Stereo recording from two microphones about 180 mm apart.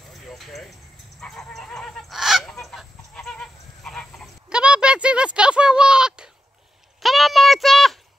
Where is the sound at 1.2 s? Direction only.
Centre (ahead or behind).